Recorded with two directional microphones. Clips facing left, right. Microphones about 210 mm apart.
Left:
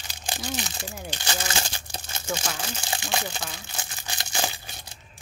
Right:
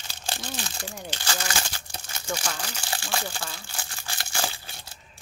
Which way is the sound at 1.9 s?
25° left (ahead or behind).